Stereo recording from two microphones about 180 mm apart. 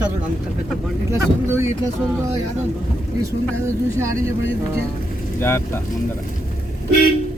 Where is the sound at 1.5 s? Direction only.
15° right (ahead or behind).